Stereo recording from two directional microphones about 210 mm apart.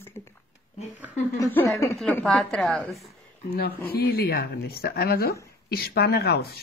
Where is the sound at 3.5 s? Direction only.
45° left (ahead or behind).